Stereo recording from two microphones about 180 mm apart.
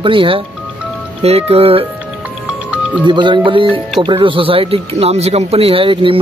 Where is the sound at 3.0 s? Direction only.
25° right (ahead or behind).